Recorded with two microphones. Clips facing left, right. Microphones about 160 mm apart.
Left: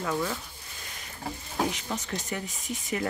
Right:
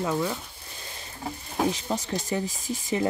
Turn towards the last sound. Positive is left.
turn(degrees=-30)  # may be behind; listen again after turning